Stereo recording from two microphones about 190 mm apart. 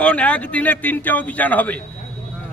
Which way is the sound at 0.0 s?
5° left (ahead or behind).